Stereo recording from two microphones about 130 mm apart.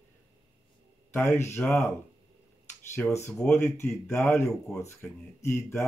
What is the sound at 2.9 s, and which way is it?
Speech, 20° left (ahead or behind).